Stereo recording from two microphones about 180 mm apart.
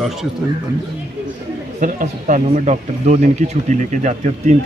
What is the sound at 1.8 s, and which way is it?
A man's voice, 45° right (ahead or behind).